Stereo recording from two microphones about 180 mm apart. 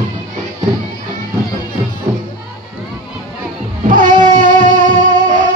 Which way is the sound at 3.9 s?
45° right (ahead or behind).